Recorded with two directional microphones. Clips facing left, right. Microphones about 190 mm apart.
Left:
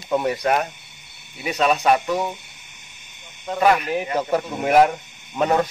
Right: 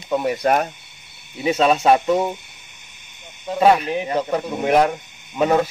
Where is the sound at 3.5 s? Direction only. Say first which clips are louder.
Right 3 dB; 25° right (ahead or behind).